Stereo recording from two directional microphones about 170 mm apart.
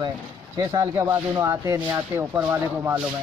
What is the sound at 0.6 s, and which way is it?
Speech, 20° right (ahead or behind).